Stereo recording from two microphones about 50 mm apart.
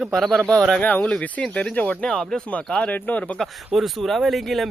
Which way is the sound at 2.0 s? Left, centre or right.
Centre.